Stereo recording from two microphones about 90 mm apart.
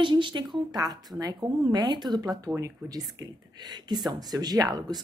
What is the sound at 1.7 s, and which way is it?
Speech, 55° right (ahead or behind).